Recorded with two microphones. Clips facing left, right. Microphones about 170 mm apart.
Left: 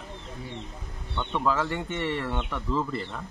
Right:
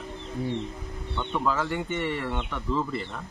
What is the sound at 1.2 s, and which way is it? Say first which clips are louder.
Speech: left 1 dB; centre (ahead or behind).